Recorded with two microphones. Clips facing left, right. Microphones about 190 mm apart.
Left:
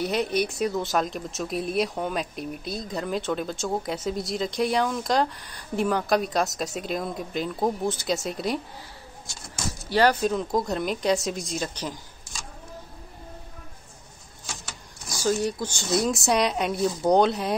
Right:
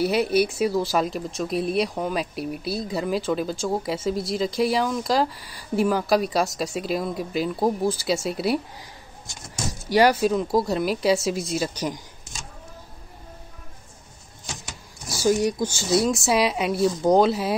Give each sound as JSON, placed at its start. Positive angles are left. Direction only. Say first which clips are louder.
{"t": 0.0, "sound": "speech", "louder": "right 4 dB", "side_deg": -5}
{"t": 9.8, "sound": "a woman's voice", "louder": "right 3 dB", "side_deg": -10}
{"t": 14.4, "sound": "vehicle", "louder": "right 2 dB", "side_deg": -20}
{"t": 15.1, "sound": "speech", "louder": "right 4 dB", "side_deg": -15}